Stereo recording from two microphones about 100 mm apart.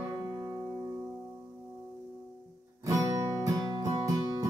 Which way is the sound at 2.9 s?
35° right (ahead or behind).